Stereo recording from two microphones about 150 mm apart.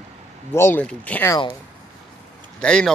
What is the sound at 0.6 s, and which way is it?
Speech, 10° left (ahead or behind).